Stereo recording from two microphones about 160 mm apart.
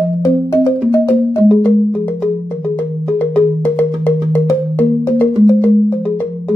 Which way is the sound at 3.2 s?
10° left (ahead or behind).